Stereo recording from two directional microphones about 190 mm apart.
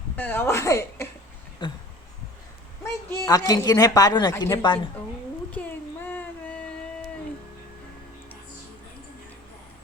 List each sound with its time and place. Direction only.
0.2 s a woman's voice: 10° left (ahead or behind)
2.8 s a woman's voice: 15° left (ahead or behind)
5.5 s a sound: 10° left (ahead or behind)